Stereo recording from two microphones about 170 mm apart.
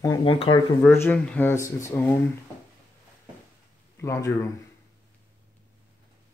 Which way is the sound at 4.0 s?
15° left (ahead or behind).